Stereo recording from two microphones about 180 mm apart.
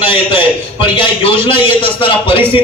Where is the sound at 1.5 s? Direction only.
30° left (ahead or behind).